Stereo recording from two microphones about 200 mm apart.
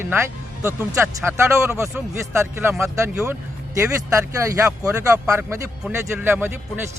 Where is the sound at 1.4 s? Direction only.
15° right (ahead or behind).